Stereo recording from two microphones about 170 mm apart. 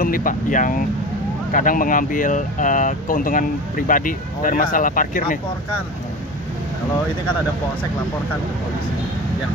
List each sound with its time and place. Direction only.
0.0 s speech: 55° left (ahead or behind)